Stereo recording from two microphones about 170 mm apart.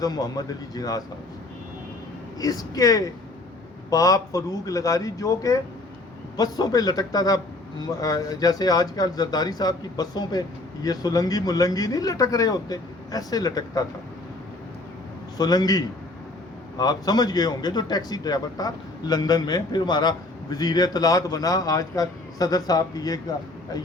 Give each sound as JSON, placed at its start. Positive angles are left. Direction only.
{"t": 0.0, "sound": "a man's voice", "side_deg": 20}
{"t": 2.4, "sound": "a man's voice", "side_deg": 20}
{"t": 15.4, "sound": "a man's voice", "side_deg": 20}